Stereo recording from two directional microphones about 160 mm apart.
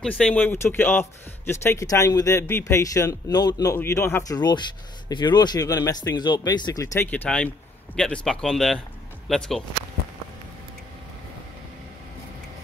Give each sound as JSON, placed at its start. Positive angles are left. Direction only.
{"t": 0.0, "sound": "speech", "side_deg": 5}
{"t": 7.1, "sound": "speech", "side_deg": 10}